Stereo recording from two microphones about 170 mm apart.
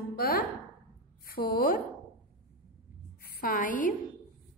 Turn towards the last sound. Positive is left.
turn(degrees=50)  # may be behind; listen again after turning